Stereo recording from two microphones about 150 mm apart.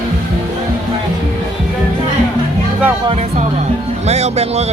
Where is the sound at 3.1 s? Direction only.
45° right (ahead or behind).